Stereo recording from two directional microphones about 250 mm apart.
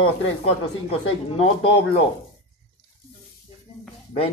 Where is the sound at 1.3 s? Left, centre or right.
Left.